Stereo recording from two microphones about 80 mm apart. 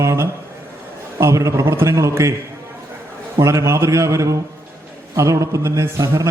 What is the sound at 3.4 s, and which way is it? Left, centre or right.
A man's voice, right.